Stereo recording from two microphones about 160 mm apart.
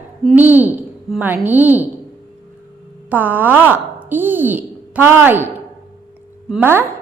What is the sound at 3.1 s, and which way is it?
A woman's voice, 10° right (ahead or behind).